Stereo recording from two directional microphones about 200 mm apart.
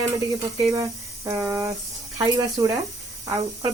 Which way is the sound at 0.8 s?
15° right (ahead or behind).